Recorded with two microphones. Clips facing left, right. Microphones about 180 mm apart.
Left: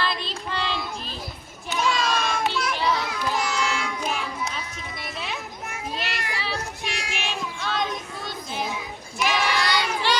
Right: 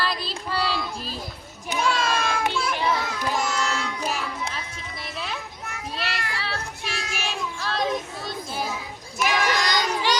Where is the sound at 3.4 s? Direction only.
10° left (ahead or behind).